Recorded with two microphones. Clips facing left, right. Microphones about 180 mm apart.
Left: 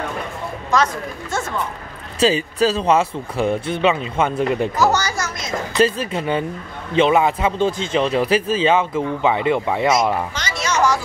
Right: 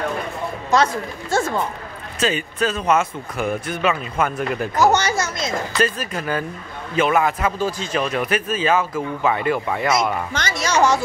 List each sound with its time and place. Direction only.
1.3 s speech: 35° right (ahead or behind)
2.1 s speech: 30° left (ahead or behind)
4.7 s a child's voice: 20° right (ahead or behind)
5.7 s speech: 25° left (ahead or behind)
10.3 s speech: 45° right (ahead or behind)